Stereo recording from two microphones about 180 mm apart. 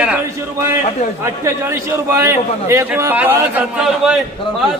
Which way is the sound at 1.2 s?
15° right (ahead or behind).